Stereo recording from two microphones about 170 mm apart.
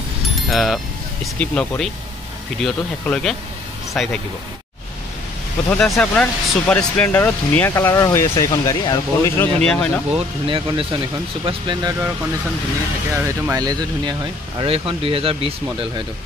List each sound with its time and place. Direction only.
0.5 s speech: centre (ahead or behind)
5.7 s speech: 5° left (ahead or behind); by 9.5 s 20° left (ahead or behind)
9.6 s speech: 5° left (ahead or behind)
10.1 s speech: 30° right (ahead or behind)
13.1 s speech: 20° right (ahead or behind)